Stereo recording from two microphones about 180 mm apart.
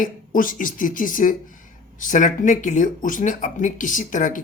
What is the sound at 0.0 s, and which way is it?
Speech, 50° left (ahead or behind).